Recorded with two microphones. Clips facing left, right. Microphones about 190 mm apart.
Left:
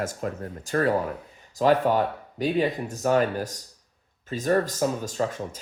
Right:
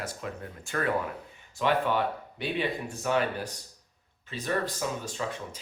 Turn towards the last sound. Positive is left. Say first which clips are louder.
# left 6 dB
turn(degrees=45)  # may be behind; listen again after turning